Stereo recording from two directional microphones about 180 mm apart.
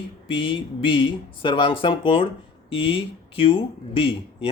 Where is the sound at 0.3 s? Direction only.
30° left (ahead or behind).